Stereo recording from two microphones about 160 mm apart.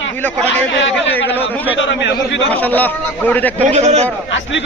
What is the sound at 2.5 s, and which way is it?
A man's voice, 10° left (ahead or behind).